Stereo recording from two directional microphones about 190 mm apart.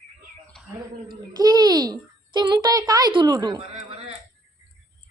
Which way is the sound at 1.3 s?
20° right (ahead or behind).